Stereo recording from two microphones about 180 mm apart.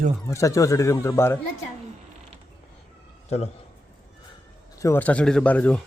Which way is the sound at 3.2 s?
35° left (ahead or behind).